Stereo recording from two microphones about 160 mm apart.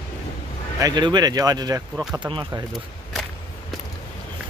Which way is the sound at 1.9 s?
5° right (ahead or behind).